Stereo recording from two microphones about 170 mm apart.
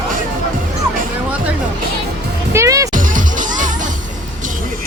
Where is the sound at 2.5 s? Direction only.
15° right (ahead or behind).